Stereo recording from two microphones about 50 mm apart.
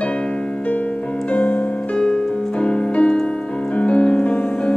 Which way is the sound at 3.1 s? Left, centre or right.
Centre.